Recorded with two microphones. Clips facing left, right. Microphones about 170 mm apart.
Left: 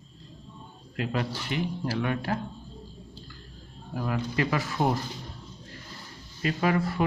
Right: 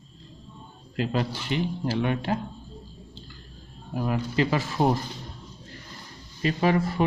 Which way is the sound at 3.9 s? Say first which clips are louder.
Right 3 dB; 20° right (ahead or behind).